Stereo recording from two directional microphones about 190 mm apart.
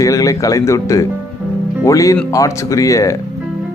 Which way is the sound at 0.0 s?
15° left (ahead or behind).